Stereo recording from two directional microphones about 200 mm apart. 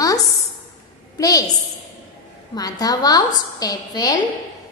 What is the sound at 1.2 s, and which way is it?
Speech, 20° left (ahead or behind).